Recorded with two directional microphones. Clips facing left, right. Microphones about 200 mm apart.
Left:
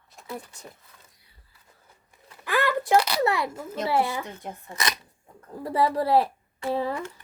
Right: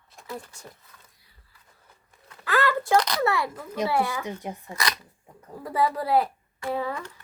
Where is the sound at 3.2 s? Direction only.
20° left (ahead or behind).